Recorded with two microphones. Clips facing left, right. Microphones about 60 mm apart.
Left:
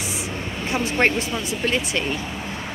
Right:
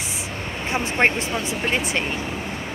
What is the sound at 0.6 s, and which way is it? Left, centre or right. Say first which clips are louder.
Speech: even; right.